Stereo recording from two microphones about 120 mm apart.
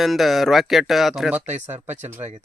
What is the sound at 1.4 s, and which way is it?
Speech, 70° right (ahead or behind).